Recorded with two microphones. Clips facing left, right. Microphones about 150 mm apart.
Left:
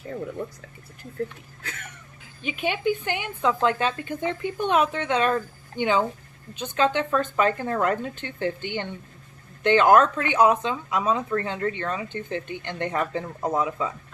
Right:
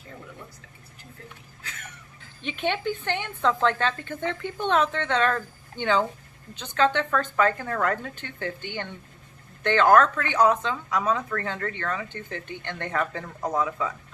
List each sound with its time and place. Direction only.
2.4 s a woman's voice: 5° left (ahead or behind)